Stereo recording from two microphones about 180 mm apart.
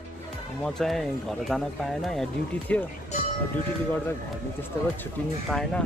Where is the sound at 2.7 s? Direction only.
5° left (ahead or behind).